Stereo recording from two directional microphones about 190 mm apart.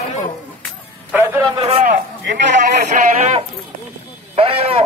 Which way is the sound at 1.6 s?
35° right (ahead or behind).